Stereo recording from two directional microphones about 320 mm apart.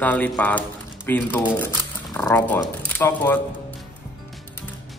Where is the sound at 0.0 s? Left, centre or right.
Centre.